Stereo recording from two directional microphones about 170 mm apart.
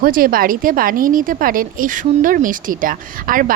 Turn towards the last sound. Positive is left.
turn(degrees=-55)  # may be behind; listen again after turning